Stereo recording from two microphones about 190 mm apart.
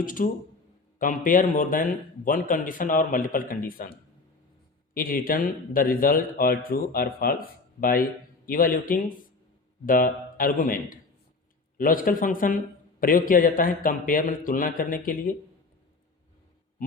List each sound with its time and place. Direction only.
0.0 s a man's voice: 45° left (ahead or behind)
4.9 s a man's voice: 50° left (ahead or behind)